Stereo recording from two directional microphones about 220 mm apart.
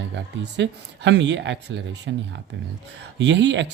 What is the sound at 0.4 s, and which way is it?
Speech, 55° right (ahead or behind).